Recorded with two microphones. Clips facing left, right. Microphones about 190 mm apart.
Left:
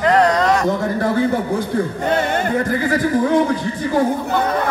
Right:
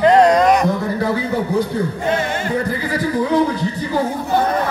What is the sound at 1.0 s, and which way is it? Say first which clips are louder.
A man's voice: left 2 dB; 50° left (ahead or behind).